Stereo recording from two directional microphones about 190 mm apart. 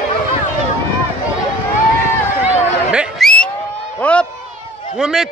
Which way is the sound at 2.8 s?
5° right (ahead or behind).